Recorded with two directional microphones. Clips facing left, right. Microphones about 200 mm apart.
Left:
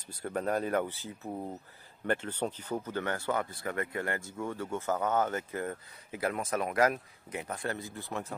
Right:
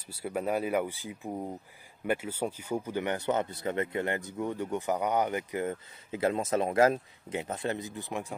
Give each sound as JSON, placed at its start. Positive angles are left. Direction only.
{"t": 0.1, "sound": "speech", "side_deg": -10}